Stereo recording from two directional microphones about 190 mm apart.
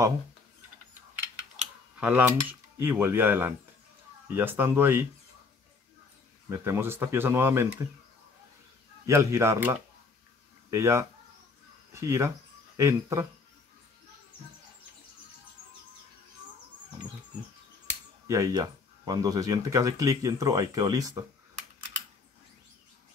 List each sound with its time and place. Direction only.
2.0 s cutlery: 10° right (ahead or behind)
2.8 s speech: 10° right (ahead or behind)
6.5 s speech: 15° right (ahead or behind)
9.0 s speech: 15° right (ahead or behind)
18.2 s speech: 15° right (ahead or behind)